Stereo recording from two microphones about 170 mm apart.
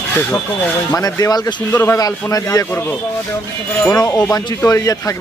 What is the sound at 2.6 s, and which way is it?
Speech, 10° left (ahead or behind).